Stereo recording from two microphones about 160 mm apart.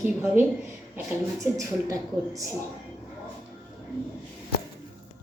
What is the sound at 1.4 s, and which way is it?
Speech, 20° right (ahead or behind).